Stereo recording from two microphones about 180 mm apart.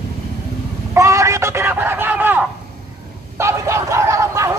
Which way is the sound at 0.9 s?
15° right (ahead or behind).